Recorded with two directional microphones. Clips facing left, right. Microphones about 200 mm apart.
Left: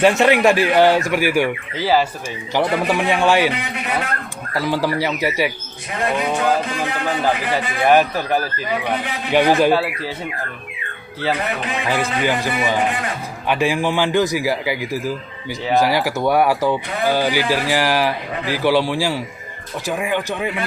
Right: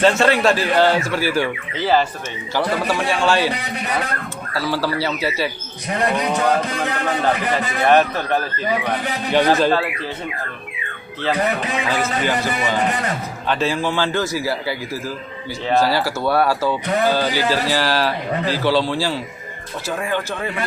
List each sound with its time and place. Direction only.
0.0 s a man's voice: 15° left (ahead or behind)
2.6 s a man's voice: 20° left (ahead or behind)
4.5 s a man's voice: 15° left (ahead or behind)
7.9 s a man's voice: 5° left (ahead or behind)
11.9 s a man's voice: 15° left (ahead or behind)